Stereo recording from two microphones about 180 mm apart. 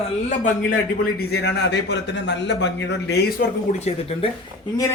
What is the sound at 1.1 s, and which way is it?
A man's voice, 70° left (ahead or behind).